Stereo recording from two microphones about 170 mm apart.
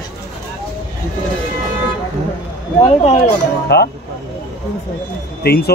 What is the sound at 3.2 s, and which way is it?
Speech, 75° left (ahead or behind).